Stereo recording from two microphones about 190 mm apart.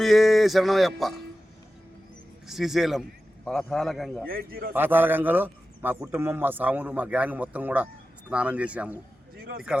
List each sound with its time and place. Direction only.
0.0 s a sound: centre (ahead or behind)
2.5 s a man's voice: centre (ahead or behind)
4.3 s a man's voice: 50° right (ahead or behind)
4.7 s a man's voice: 10° right (ahead or behind)